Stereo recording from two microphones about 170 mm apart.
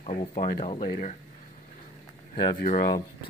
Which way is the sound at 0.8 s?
50° left (ahead or behind).